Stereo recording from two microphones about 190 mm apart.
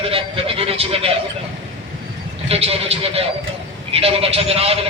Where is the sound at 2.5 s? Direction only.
30° right (ahead or behind).